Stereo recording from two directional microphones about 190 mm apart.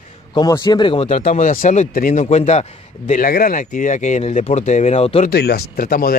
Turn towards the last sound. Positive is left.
turn(degrees=50)  # may be behind; listen again after turning